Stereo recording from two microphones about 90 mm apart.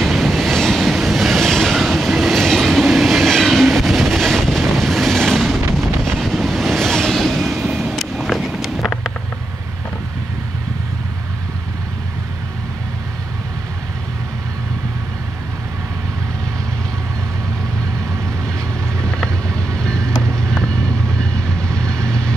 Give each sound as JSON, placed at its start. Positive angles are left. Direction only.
{"t": 0.0, "sound": "train", "side_deg": 0}
{"t": 6.1, "sound": "vehicle", "side_deg": 0}
{"t": 19.0, "sound": "vehicle", "side_deg": 10}